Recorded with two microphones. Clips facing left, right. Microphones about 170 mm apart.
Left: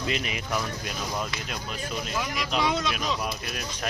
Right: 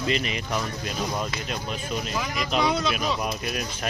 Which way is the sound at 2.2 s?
Centre (ahead or behind).